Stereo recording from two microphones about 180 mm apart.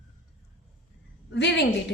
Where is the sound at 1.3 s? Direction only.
75° left (ahead or behind).